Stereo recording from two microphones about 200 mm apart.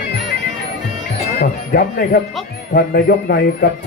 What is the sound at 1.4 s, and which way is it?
Speech, 50° left (ahead or behind).